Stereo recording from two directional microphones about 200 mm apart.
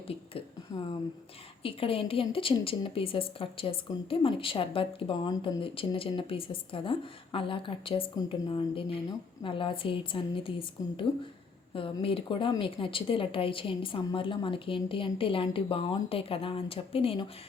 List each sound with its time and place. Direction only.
0.7 s a woman's voice: 20° left (ahead or behind)